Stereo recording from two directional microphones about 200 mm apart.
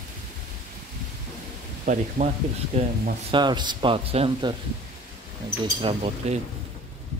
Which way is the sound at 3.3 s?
20° right (ahead or behind).